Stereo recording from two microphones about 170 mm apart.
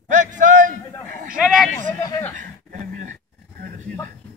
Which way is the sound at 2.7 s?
45° right (ahead or behind).